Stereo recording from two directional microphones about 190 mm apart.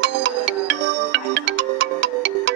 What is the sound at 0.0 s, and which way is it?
Music, 65° right (ahead or behind).